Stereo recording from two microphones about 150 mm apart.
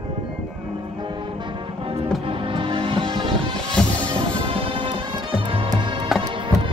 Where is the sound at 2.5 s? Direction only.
35° right (ahead or behind).